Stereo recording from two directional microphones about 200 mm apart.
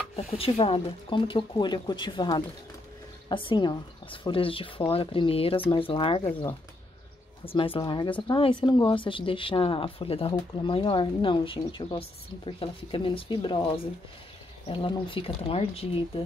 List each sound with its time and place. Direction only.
0.1 s speech: 30° left (ahead or behind)
7.4 s speech: 25° left (ahead or behind)